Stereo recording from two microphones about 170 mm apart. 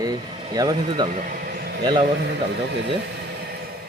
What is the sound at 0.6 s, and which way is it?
Speech, 20° right (ahead or behind).